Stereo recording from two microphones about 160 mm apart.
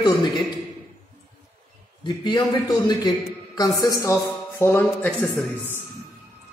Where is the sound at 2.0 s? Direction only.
25° left (ahead or behind).